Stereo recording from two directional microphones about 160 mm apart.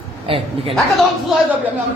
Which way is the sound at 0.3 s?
35° right (ahead or behind).